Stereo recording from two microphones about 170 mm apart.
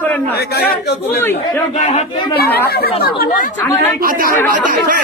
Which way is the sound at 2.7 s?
65° left (ahead or behind).